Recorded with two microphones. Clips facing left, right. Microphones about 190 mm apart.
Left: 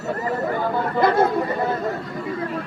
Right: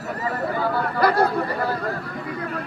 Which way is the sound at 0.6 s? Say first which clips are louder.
Left 1 dB; 20° left (ahead or behind).